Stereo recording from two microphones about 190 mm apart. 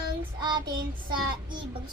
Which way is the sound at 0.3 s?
25° right (ahead or behind).